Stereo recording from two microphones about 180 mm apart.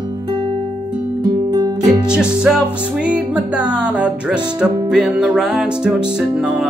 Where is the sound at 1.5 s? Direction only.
20° right (ahead or behind).